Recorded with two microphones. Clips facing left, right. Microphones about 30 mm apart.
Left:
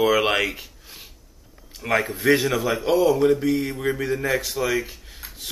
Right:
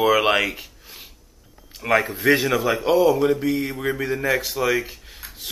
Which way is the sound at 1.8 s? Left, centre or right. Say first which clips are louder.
Right 2 dB; centre.